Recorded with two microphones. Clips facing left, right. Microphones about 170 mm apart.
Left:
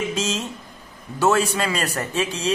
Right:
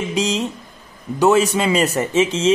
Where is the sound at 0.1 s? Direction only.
15° right (ahead or behind).